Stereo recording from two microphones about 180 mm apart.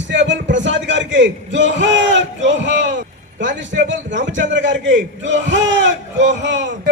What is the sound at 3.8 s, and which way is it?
A man's voice, 90° right.